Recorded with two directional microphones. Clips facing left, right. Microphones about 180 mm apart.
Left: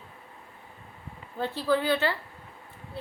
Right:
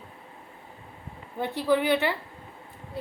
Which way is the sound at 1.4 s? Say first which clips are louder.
Right 2 dB; 15° right (ahead or behind).